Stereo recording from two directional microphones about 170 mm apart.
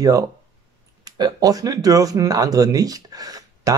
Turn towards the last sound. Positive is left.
turn(degrees=-20)  # may be behind; listen again after turning